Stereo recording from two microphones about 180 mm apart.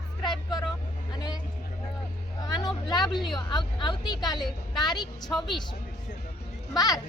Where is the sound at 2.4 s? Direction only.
20° left (ahead or behind).